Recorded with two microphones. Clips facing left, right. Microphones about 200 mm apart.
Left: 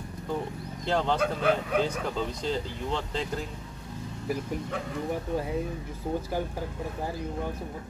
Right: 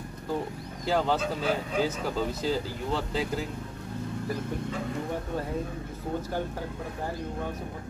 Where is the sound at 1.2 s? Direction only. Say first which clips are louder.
Left 3 dB; 60° left (ahead or behind).